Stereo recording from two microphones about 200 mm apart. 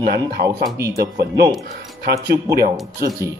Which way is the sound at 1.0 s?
50° right (ahead or behind).